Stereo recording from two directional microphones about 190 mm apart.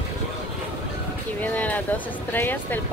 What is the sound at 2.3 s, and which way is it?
Speech, 10° left (ahead or behind).